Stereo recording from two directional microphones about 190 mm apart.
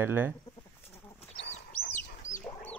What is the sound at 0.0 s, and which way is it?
Speech, 10° right (ahead or behind).